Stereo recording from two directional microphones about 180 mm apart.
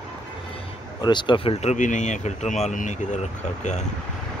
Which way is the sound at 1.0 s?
25° left (ahead or behind).